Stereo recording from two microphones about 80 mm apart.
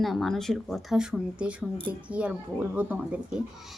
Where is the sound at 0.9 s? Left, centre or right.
Centre.